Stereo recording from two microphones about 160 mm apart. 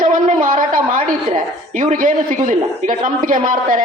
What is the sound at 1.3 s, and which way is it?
Speech, 50° right (ahead or behind).